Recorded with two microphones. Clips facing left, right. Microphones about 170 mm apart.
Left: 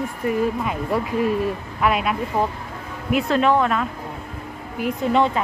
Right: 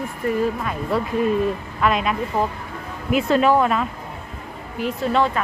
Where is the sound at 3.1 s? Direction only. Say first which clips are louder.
Right 1 dB; centre (ahead or behind).